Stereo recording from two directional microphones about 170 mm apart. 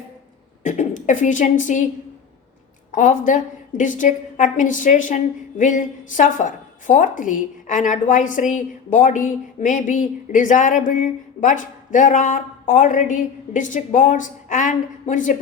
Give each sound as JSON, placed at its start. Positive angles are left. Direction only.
{"t": 0.6, "sound": "a woman's voice", "side_deg": 45}
{"t": 2.9, "sound": "a woman's voice", "side_deg": 50}